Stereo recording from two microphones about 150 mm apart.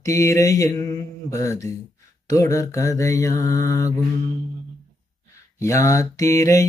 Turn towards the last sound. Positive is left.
turn(degrees=20)  # may be behind; listen again after turning